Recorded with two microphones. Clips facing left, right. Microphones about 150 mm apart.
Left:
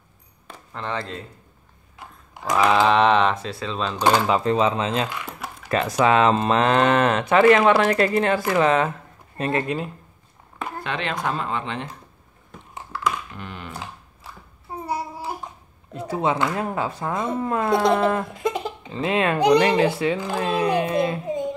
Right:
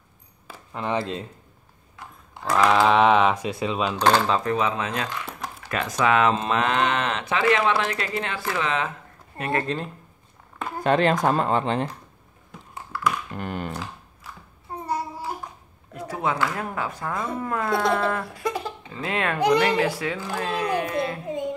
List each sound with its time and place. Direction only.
0.5 s speech: 10° right (ahead or behind)
2.0 s a sound: 15° left (ahead or behind)
2.5 s typing: centre (ahead or behind)
3.4 s speech: 15° right (ahead or behind)
4.0 s speech: 10° left (ahead or behind)
4.4 s speech: 25° left (ahead or behind); by 8.9 s 45° left (ahead or behind)
9.4 s speech: 20° left (ahead or behind)
10.8 s speech: 40° right (ahead or behind)
12.7 s a sound: 20° left (ahead or behind)
13.3 s speech: 45° right (ahead or behind)
14.9 s babbling: 10° left (ahead or behind)
15.9 s speech: 25° left (ahead or behind)